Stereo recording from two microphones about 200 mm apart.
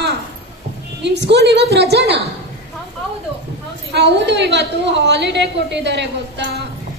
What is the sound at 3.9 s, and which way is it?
A woman's voice, 60° right (ahead or behind).